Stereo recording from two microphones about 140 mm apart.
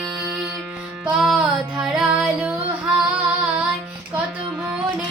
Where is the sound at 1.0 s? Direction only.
5° right (ahead or behind).